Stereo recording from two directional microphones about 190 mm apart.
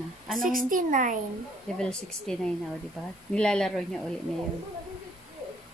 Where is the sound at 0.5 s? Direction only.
45° right (ahead or behind).